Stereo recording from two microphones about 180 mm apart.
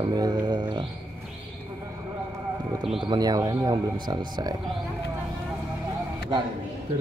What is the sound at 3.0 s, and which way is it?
Speech, 20° right (ahead or behind).